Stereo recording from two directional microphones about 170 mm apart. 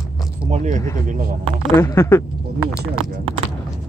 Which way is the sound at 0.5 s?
45° right (ahead or behind).